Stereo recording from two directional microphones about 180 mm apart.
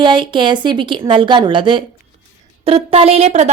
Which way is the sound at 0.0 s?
25° right (ahead or behind).